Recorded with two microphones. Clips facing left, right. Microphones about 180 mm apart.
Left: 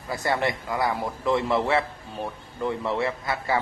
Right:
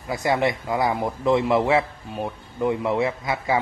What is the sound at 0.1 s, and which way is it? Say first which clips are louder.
A man's voice: right 4 dB; 20° right (ahead or behind).